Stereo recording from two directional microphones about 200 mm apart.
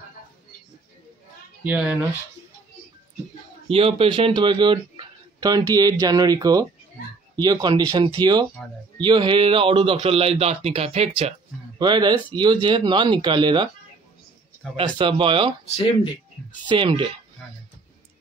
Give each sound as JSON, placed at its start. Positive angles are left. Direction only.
{"t": 1.6, "sound": "speech", "side_deg": -5}
{"t": 3.6, "sound": "speech", "side_deg": -30}
{"t": 11.8, "sound": "speech", "side_deg": -20}
{"t": 14.8, "sound": "speech", "side_deg": -25}
{"t": 16.6, "sound": "speech", "side_deg": -25}